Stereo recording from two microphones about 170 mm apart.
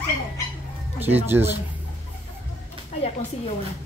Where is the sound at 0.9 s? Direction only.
10° right (ahead or behind).